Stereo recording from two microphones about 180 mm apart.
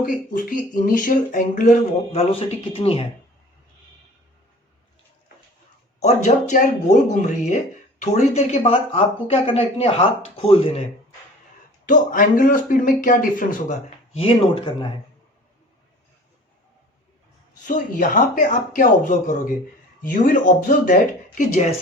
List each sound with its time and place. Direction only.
0.0 s speech: 45° left (ahead or behind); by 3.1 s 30° left (ahead or behind)
6.0 s speech: 40° left (ahead or behind)
11.9 s speech: 50° left (ahead or behind); by 14.9 s 30° left (ahead or behind)
17.7 s speech: 45° left (ahead or behind)